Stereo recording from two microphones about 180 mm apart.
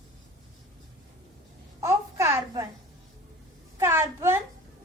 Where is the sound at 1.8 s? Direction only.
15° right (ahead or behind).